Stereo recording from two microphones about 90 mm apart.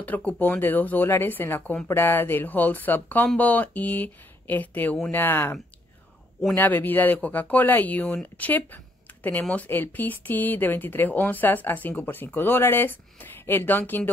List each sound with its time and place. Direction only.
0.0 s speech: 15° left (ahead or behind)